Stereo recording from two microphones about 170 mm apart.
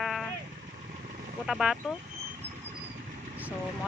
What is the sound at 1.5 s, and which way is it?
Speech, 5° right (ahead or behind).